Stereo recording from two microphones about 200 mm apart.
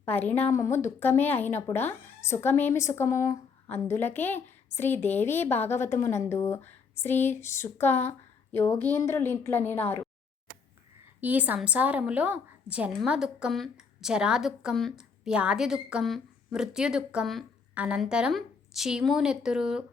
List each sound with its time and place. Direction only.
0.0 s speech: 10° left (ahead or behind)
11.2 s a woman's voice: 10° right (ahead or behind)